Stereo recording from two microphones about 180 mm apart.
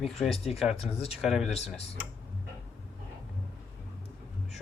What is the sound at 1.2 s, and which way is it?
Speech, 5° right (ahead or behind).